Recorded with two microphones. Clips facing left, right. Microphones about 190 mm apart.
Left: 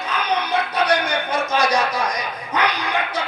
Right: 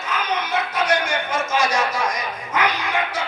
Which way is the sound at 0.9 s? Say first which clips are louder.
Left 1 dB; 35° left (ahead or behind).